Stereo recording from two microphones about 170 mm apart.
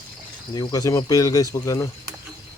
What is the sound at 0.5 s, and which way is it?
Speech, 20° left (ahead or behind).